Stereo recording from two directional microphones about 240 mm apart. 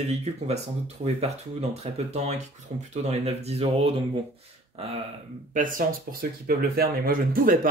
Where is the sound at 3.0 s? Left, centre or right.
Right.